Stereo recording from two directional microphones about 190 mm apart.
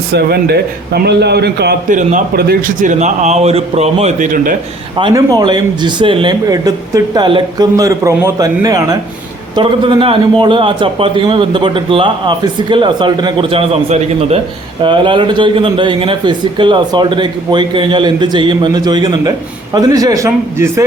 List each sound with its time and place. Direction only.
0.1 s a man's voice: 55° right (ahead or behind)
1.9 s a man's voice: 40° right (ahead or behind)
4.9 s a man's voice: 20° right (ahead or behind)